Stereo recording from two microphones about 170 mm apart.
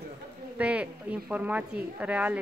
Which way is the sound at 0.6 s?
10° right (ahead or behind).